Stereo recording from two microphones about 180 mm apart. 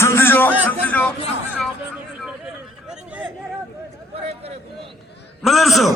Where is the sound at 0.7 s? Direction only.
10° left (ahead or behind).